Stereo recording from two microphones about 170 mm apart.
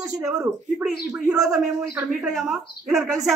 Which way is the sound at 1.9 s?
5° right (ahead or behind).